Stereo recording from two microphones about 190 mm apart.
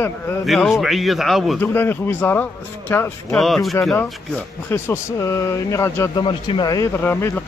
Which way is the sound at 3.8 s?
10° left (ahead or behind).